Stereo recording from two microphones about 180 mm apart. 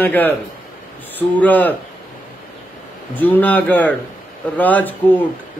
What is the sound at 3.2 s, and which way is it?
A man's voice, 10° left (ahead or behind).